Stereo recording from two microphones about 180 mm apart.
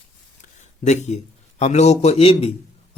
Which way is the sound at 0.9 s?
40° left (ahead or behind).